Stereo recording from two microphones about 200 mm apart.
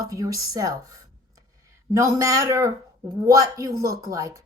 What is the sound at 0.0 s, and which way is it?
A woman's voice, 15° right (ahead or behind).